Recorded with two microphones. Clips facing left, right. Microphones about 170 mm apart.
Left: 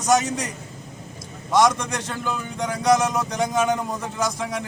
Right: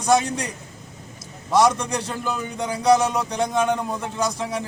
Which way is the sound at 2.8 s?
30° right (ahead or behind).